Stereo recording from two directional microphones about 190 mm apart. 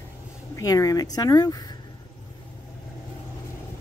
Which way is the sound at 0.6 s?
20° left (ahead or behind).